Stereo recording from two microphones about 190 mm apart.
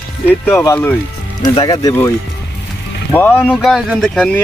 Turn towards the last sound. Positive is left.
turn(degrees=5)  # may be behind; listen again after turning